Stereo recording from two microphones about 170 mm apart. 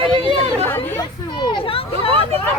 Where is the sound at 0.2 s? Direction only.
30° right (ahead or behind).